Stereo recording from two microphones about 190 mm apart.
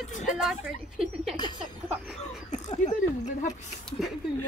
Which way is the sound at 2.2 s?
40° left (ahead or behind).